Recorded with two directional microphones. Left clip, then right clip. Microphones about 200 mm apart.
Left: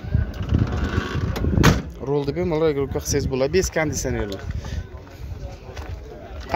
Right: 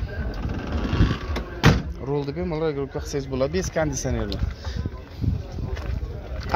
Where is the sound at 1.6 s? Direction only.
15° left (ahead or behind).